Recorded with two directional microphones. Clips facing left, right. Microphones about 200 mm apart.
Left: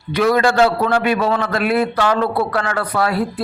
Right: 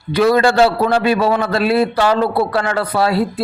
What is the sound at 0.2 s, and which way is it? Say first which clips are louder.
A man's voice: right 2 dB; 35° right (ahead or behind).